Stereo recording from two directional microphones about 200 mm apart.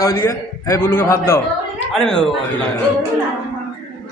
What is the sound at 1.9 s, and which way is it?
Speech, 5° left (ahead or behind).